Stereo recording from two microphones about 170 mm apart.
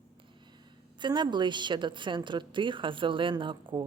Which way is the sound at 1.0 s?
25° right (ahead or behind).